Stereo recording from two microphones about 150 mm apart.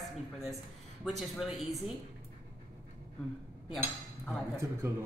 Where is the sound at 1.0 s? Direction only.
Centre (ahead or behind).